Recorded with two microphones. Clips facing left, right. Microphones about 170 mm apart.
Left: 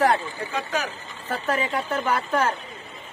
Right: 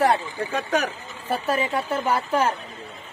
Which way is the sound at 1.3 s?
10° right (ahead or behind).